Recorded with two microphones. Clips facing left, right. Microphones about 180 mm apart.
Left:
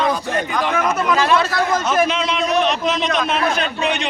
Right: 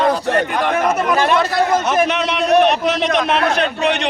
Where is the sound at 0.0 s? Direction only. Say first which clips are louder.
Right 4 dB; 70° right (ahead or behind).